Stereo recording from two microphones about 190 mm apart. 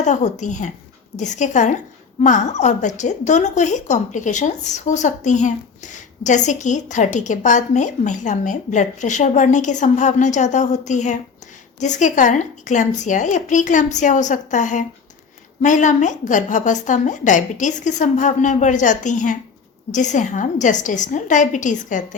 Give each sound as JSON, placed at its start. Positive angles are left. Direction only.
{"t": 0.0, "sound": "a woman's voice", "side_deg": 40}